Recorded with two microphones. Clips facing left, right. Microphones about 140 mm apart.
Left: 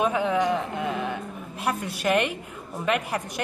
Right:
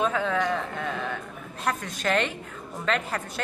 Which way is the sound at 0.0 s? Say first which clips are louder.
Left 2 dB; 15° left (ahead or behind).